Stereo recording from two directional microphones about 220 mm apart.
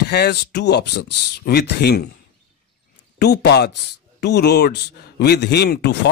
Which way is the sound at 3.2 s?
50° left (ahead or behind).